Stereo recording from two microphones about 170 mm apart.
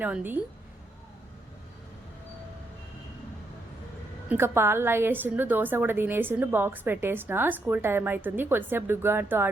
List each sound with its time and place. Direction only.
0.0 s a woman's voice: 10° right (ahead or behind)
4.3 s a woman's voice: 15° right (ahead or behind)